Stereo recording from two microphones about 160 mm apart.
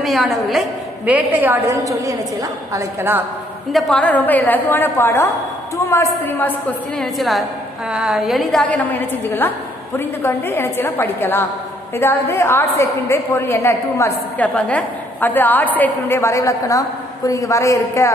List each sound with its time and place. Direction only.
0.0 s a woman's voice: centre (ahead or behind)
3.7 s a woman's voice: 5° left (ahead or behind)
7.0 s a woman's voice: centre (ahead or behind); by 18.1 s 20° left (ahead or behind)